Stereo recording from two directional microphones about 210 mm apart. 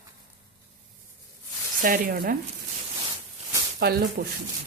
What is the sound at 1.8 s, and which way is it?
Speech, 40° right (ahead or behind).